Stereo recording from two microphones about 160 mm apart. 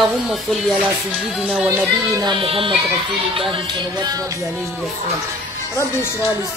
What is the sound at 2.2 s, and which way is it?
Speech, 35° right (ahead or behind).